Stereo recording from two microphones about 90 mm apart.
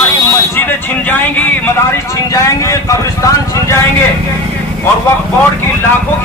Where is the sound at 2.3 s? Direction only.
35° left (ahead or behind).